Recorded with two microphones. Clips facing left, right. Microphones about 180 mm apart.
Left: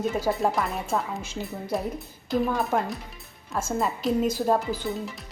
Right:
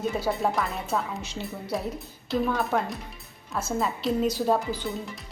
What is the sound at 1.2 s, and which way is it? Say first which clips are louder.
Speech: left 2 dB; 50° left (ahead or behind).